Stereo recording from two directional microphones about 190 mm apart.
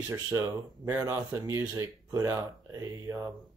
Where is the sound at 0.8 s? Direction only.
15° right (ahead or behind).